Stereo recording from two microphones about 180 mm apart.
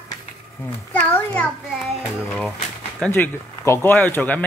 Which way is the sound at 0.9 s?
10° left (ahead or behind).